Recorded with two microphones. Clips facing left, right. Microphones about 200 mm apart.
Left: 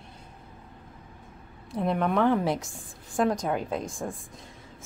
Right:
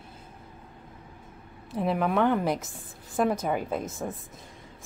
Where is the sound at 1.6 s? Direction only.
5° right (ahead or behind).